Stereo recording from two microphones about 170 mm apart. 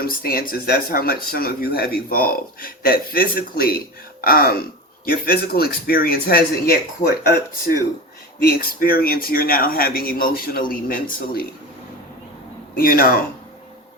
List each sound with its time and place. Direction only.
0.0 s speech: 60° left (ahead or behind)
8.4 s speech: 60° left (ahead or behind)
12.7 s speech: 60° left (ahead or behind)